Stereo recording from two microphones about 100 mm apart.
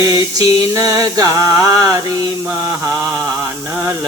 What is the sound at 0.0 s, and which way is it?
Mantra, 35° right (ahead or behind).